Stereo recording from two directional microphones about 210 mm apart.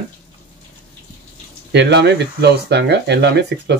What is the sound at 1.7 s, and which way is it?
Speech, 55° right (ahead or behind).